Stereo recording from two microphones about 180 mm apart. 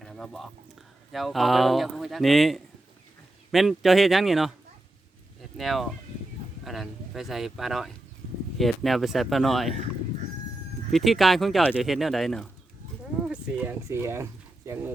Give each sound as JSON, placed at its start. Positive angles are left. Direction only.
{"t": 0.0, "sound": "speech", "side_deg": 0}
{"t": 5.5, "sound": "speech", "side_deg": 0}
{"t": 10.9, "sound": "speech", "side_deg": 0}